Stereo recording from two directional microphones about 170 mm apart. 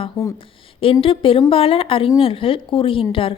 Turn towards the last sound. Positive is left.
turn(degrees=30)  # may be behind; listen again after turning